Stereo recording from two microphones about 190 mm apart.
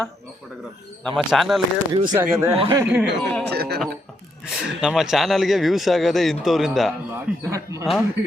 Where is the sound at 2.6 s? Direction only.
25° right (ahead or behind).